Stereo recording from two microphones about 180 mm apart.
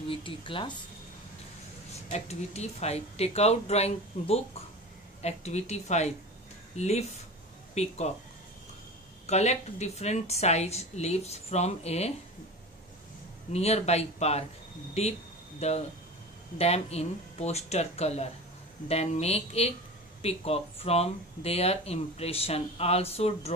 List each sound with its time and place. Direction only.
0.1 s speech: 30° left (ahead or behind)
2.0 s speech: 35° left (ahead or behind)
9.2 s speech: 40° left (ahead or behind)
13.5 s speech: 35° left (ahead or behind)